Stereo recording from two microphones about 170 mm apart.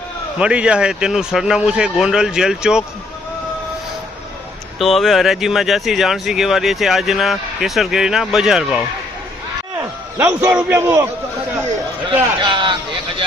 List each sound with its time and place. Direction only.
0.3 s speech: 5° right (ahead or behind)
4.8 s a man's voice: centre (ahead or behind)
12.4 s speech: 30° right (ahead or behind)